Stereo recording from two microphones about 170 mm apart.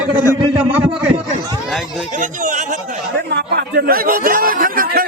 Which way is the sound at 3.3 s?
70° right (ahead or behind).